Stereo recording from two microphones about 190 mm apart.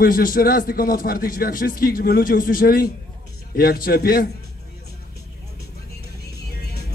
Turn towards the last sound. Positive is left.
turn(degrees=60)  # may be behind; listen again after turning